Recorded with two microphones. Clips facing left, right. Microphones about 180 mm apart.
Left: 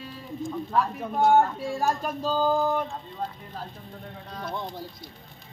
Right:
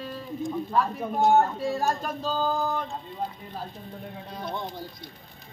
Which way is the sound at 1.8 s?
10° left (ahead or behind).